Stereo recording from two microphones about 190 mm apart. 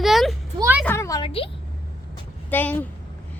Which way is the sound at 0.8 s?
15° left (ahead or behind).